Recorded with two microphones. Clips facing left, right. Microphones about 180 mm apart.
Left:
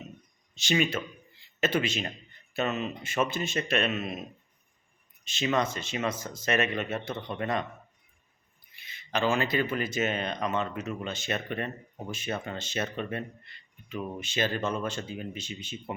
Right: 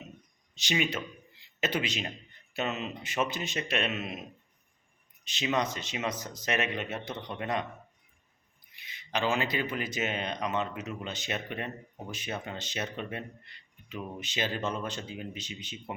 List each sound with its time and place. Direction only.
0.5 s speech: 15° right (ahead or behind)
5.2 s speech: 15° right (ahead or behind)
8.7 s speech: 15° right (ahead or behind)